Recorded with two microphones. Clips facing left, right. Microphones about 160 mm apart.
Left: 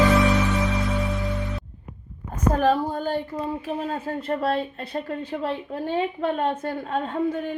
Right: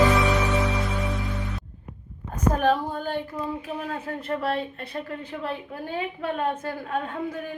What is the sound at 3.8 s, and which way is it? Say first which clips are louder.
A woman's voice: left 3 dB; 30° left (ahead or behind).